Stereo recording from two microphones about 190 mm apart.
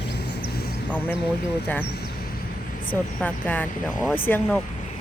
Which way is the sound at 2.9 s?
10° left (ahead or behind).